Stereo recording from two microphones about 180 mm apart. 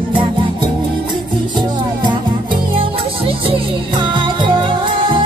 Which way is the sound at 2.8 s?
30° right (ahead or behind).